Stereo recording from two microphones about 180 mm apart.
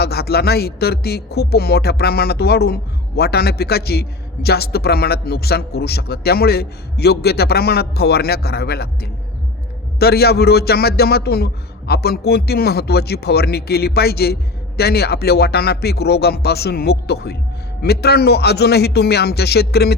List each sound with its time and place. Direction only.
0.0 s speech: 60° left (ahead or behind)